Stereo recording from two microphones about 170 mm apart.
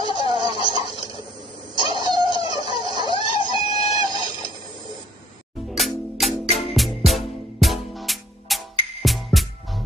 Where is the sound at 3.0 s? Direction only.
30° left (ahead or behind).